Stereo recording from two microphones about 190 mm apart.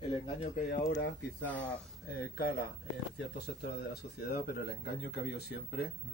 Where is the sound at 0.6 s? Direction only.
45° left (ahead or behind).